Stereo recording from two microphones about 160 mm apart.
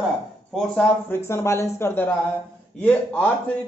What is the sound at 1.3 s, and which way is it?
Speech, 15° left (ahead or behind).